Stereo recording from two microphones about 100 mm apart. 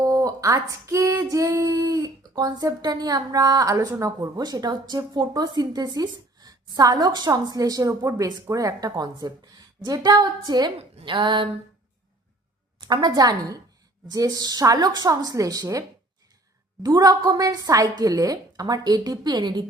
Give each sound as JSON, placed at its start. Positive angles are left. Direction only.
{"t": 0.0, "sound": "a sound", "side_deg": -40}
{"t": 1.1, "sound": "a woman's voice", "side_deg": -35}
{"t": 3.8, "sound": "speech", "side_deg": -25}
{"t": 4.2, "sound": "a woman's voice", "side_deg": -35}
{"t": 11.0, "sound": "a sound", "side_deg": -50}
{"t": 12.8, "sound": "a woman's voice", "side_deg": -45}
{"t": 16.8, "sound": "a woman's voice", "side_deg": -40}